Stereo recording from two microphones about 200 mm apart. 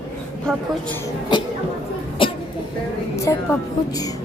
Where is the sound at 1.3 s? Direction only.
20° left (ahead or behind).